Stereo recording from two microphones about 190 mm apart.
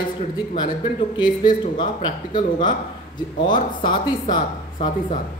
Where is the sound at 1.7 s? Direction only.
25° left (ahead or behind).